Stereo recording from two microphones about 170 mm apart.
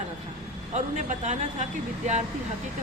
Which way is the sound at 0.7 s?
40° right (ahead or behind).